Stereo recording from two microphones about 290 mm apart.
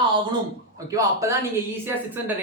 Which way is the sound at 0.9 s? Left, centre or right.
Centre.